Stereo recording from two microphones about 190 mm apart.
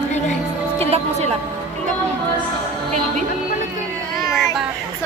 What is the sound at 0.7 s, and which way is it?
Music, 35° right (ahead or behind).